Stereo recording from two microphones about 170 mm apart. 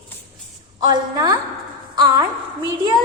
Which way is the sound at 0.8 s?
25° right (ahead or behind).